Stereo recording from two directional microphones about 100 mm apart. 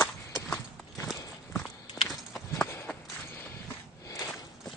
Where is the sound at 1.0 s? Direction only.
Centre (ahead or behind).